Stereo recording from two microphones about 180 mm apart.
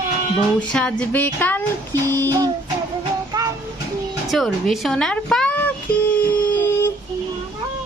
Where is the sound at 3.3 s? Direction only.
20° right (ahead or behind).